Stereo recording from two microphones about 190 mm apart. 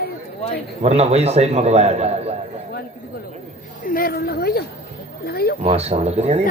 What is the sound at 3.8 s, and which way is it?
A woman's voice, 50° left (ahead or behind).